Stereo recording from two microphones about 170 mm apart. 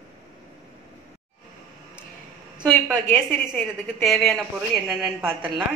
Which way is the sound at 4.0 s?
Centre (ahead or behind).